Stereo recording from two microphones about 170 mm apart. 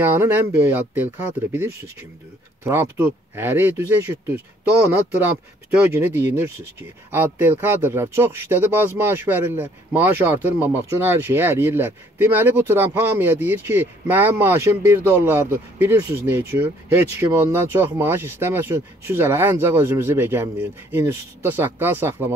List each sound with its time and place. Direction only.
0.0 s speech: 15° right (ahead or behind)